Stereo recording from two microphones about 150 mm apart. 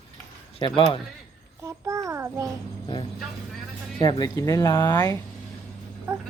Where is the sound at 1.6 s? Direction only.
20° right (ahead or behind).